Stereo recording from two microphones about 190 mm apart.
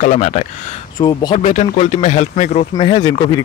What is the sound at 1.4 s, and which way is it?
Speech, 35° left (ahead or behind).